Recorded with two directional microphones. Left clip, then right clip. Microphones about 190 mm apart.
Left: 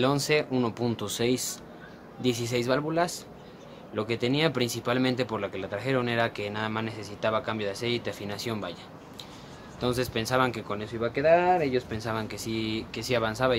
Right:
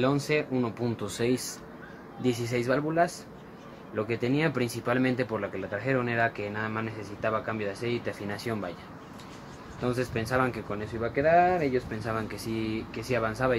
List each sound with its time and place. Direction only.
0.0 s speech: 15° left (ahead or behind)
2.2 s speech: 20° left (ahead or behind)
2.6 s speech: 5° left (ahead or behind)
9.8 s speech: 10° left (ahead or behind)